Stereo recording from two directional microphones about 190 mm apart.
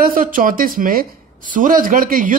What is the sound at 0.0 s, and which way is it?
A man's voice, 45° right (ahead or behind).